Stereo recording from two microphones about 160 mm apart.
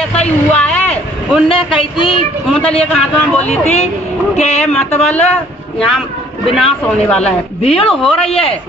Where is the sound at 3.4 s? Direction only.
40° left (ahead or behind).